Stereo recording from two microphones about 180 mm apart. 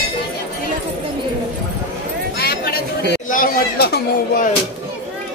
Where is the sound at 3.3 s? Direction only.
55° left (ahead or behind).